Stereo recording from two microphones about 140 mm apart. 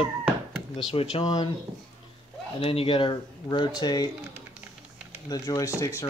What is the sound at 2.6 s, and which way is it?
Speech, 40° left (ahead or behind).